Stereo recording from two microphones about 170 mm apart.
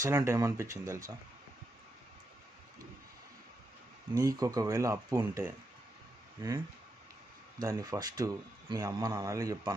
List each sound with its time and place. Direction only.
0.0 s speech: 15° right (ahead or behind)
4.1 s speech: 20° right (ahead or behind)
7.6 s speech: 20° right (ahead or behind)